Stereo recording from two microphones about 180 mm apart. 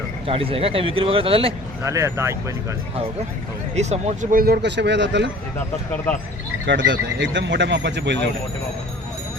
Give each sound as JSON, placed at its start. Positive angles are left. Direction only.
{"t": 0.3, "sound": "speech", "side_deg": -30}
{"t": 1.8, "sound": "speech", "side_deg": -15}
{"t": 3.8, "sound": "speech", "side_deg": -40}
{"t": 6.7, "sound": "speech", "side_deg": -85}